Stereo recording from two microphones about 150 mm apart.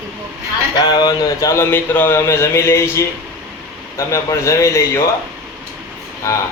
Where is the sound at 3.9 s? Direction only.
20° left (ahead or behind).